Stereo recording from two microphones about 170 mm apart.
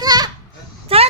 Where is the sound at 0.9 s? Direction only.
35° right (ahead or behind).